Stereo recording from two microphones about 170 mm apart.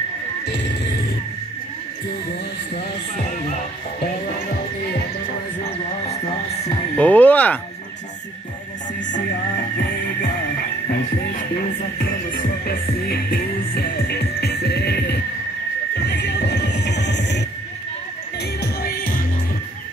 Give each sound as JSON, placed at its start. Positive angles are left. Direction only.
{"t": 0.5, "sound": "music", "side_deg": 90}
{"t": 4.3, "sound": "music", "side_deg": 70}
{"t": 5.6, "sound": "music", "side_deg": 35}
{"t": 7.0, "sound": "music", "side_deg": 10}
{"t": 9.1, "sound": "music", "side_deg": 60}
{"t": 18.6, "sound": "music", "side_deg": 65}